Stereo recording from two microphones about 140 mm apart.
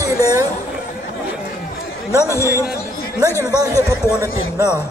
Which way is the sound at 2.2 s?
20° left (ahead or behind).